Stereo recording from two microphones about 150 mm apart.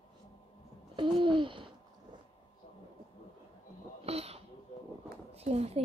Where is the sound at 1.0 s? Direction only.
30° right (ahead or behind).